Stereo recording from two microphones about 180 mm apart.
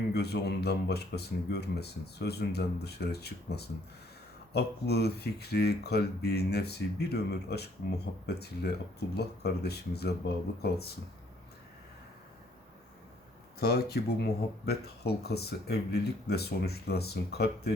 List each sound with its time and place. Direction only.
0.1 s speech: 65° left (ahead or behind)
13.6 s speech: 60° left (ahead or behind)